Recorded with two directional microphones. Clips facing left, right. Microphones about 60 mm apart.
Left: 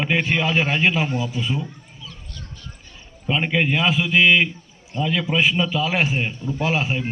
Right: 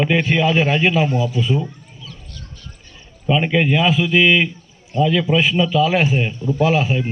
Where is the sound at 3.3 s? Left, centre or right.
Centre.